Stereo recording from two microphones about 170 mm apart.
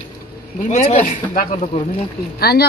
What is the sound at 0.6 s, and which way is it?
Speech, 45° left (ahead or behind).